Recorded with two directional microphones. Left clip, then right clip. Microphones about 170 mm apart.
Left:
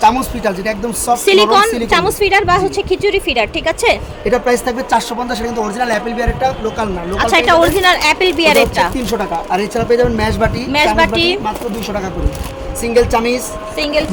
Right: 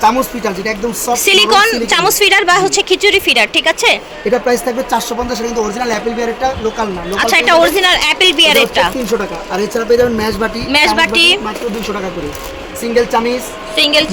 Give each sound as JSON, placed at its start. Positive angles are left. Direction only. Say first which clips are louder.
{"t": 0.0, "sound": "a woman's voice", "louder": "even", "side_deg": 15}
{"t": 1.1, "sound": "a woman's voice", "louder": "even", "side_deg": 5}
{"t": 7.1, "sound": "a woman's voice", "louder": "right 1 dB", "side_deg": 5}
{"t": 10.7, "sound": "a woman's voice", "louder": "right 2 dB", "side_deg": 0}
{"t": 12.9, "sound": "speech", "louder": "even", "side_deg": 40}
{"t": 13.7, "sound": "a woman's voice", "louder": "right 5 dB", "side_deg": 0}